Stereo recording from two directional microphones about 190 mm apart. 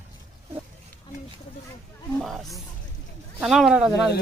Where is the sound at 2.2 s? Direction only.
Centre (ahead or behind).